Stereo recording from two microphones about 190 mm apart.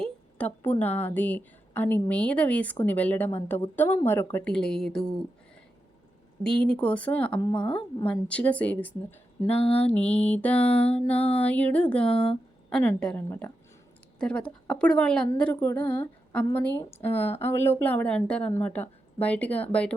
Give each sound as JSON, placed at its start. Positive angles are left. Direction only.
{"t": 0.0, "sound": "a woman's voice", "side_deg": 10}
{"t": 6.4, "sound": "a woman's voice", "side_deg": 5}
{"t": 7.3, "sound": "speech", "side_deg": 25}
{"t": 8.0, "sound": "a woman's voice", "side_deg": 5}
{"t": 9.6, "sound": "mantra", "side_deg": 30}
{"t": 9.8, "sound": "a woman's voice", "side_deg": 5}